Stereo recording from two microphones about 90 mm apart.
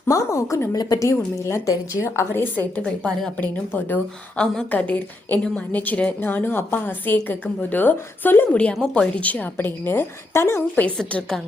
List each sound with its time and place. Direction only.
0.1 s a woman's voice: 40° left (ahead or behind)
2.8 s a woman's voice: 10° left (ahead or behind)
3.3 s a woman's voice: 20° left (ahead or behind)
8.7 s speech: 5° left (ahead or behind)
9.1 s a woman's voice: 15° left (ahead or behind)